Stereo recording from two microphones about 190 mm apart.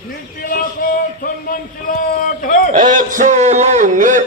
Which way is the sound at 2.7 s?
45° right (ahead or behind).